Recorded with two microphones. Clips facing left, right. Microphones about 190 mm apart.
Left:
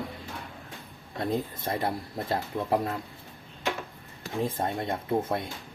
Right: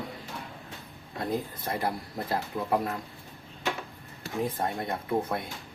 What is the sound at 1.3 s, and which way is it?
Speech, 25° left (ahead or behind).